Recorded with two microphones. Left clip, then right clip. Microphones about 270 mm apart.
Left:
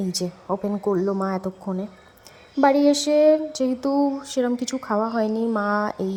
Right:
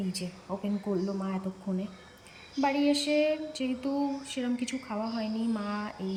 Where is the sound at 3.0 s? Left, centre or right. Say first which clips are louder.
Left 11 dB; left.